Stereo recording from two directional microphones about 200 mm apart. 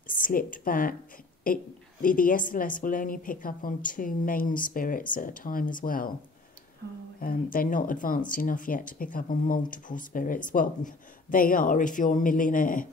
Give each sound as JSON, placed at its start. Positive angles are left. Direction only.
{"t": 0.1, "sound": "a woman's voice", "side_deg": 45}
{"t": 7.2, "sound": "a woman's voice", "side_deg": 45}